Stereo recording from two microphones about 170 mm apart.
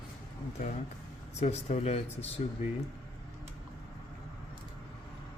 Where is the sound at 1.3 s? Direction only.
40° left (ahead or behind).